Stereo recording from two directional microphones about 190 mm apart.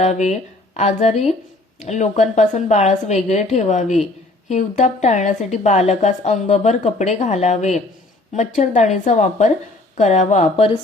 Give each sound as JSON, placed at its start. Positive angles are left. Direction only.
{"t": 0.0, "sound": "a woman's voice", "side_deg": 35}